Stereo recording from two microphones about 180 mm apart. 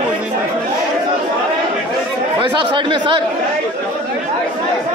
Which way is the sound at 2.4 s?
25° right (ahead or behind).